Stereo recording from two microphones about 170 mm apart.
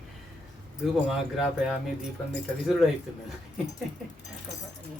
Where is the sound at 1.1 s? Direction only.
5° right (ahead or behind).